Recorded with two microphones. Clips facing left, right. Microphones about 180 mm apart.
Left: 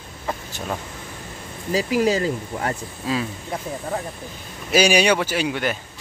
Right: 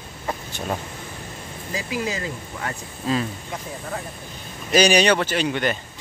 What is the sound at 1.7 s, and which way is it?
Speech, 35° left (ahead or behind).